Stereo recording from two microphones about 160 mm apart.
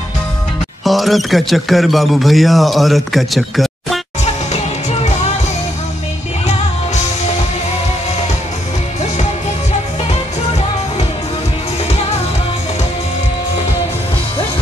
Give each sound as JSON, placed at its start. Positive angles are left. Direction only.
{"t": 0.8, "sound": "speech", "side_deg": 0}
{"t": 4.2, "sound": "music", "side_deg": 45}